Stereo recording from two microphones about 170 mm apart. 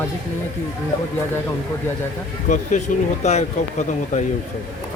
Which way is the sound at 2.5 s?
45° left (ahead or behind).